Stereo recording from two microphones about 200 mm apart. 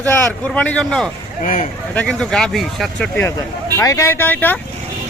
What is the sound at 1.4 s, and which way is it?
Speech, 40° left (ahead or behind).